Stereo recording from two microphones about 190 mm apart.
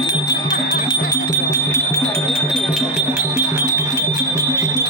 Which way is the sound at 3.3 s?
15° right (ahead or behind).